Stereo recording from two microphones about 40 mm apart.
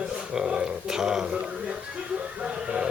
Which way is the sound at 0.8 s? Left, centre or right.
Centre.